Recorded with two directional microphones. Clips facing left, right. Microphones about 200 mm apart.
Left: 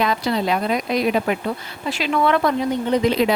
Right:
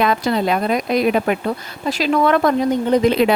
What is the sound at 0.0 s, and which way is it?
Speech, 55° right (ahead or behind).